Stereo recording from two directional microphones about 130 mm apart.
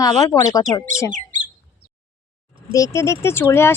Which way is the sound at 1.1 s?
75° right (ahead or behind).